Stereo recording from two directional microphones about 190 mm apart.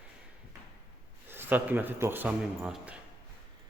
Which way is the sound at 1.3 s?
10° right (ahead or behind).